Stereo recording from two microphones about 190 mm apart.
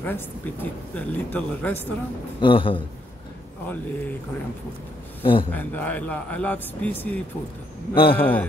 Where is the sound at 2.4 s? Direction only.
25° left (ahead or behind).